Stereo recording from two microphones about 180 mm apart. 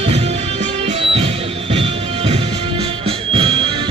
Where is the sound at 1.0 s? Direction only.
30° right (ahead or behind).